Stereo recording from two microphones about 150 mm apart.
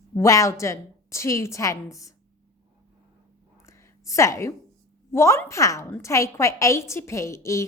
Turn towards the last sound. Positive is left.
turn(degrees=20)  # may be behind; listen again after turning